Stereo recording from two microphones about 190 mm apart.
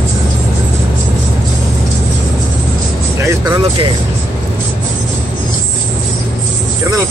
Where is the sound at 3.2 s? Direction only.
20° right (ahead or behind).